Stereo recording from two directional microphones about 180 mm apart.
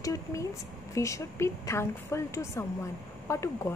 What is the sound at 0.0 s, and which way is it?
A woman's voice, 20° left (ahead or behind).